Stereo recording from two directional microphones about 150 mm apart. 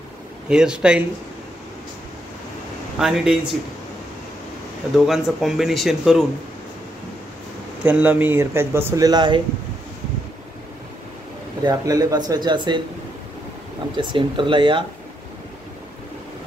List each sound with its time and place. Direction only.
0.5 s speech: 5° right (ahead or behind)
3.0 s speech: 5° right (ahead or behind)
4.9 s speech: 5° right (ahead or behind)
7.8 s speech: 10° right (ahead or behind); by 9.4 s 30° right (ahead or behind)
11.6 s speech: 25° right (ahead or behind)
13.9 s speech: 35° right (ahead or behind)